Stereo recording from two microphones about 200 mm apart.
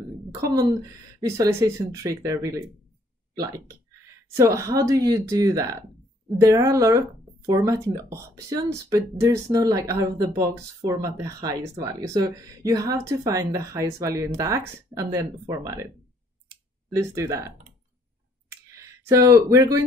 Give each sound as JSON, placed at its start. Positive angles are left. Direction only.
{"t": 0.3, "sound": "a woman's voice", "side_deg": -15}
{"t": 16.9, "sound": "speech", "side_deg": -15}
{"t": 18.5, "sound": "a sound", "side_deg": -15}